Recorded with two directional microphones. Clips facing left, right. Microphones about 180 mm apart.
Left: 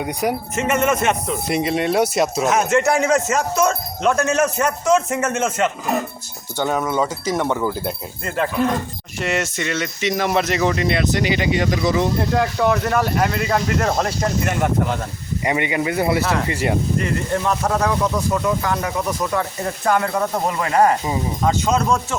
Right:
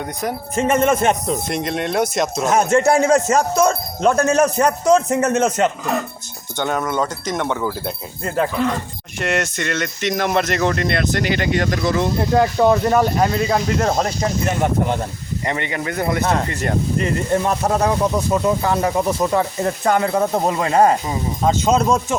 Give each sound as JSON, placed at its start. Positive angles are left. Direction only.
{"t": 0.0, "sound": "wind chime", "side_deg": 10}
{"t": 0.5, "sound": "speech", "side_deg": -30}
{"t": 1.5, "sound": "speech", "side_deg": 5}
{"t": 2.5, "sound": "speech", "side_deg": -30}
{"t": 6.6, "sound": "wind chime", "side_deg": 5}
{"t": 9.2, "sound": "speech", "side_deg": 5}
{"t": 11.5, "sound": "wind chime", "side_deg": 5}
{"t": 12.3, "sound": "speech", "side_deg": -35}
{"t": 13.8, "sound": "speech", "side_deg": -15}
{"t": 15.4, "sound": "wind chime", "side_deg": 10}
{"t": 17.3, "sound": "speech", "side_deg": -30}